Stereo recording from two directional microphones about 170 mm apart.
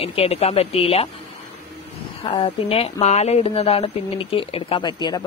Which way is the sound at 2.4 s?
35° left (ahead or behind).